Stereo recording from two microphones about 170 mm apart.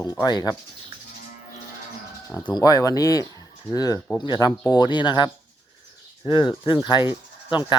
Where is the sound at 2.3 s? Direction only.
25° left (ahead or behind).